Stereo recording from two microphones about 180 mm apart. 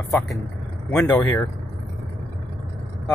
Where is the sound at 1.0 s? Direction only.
10° left (ahead or behind).